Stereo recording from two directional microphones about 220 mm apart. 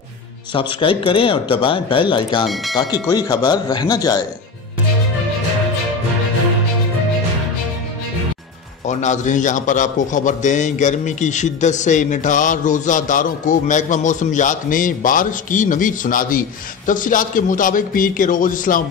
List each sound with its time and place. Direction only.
0.5 s a man's voice: 20° left (ahead or behind)
2.4 s speech: centre (ahead or behind)
2.7 s speech: 15° left (ahead or behind)
8.8 s a man's voice: 35° left (ahead or behind)